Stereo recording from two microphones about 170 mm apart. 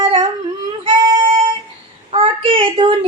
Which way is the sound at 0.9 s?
30° right (ahead or behind).